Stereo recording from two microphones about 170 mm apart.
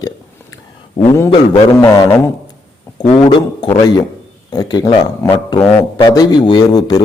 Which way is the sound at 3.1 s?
30° left (ahead or behind).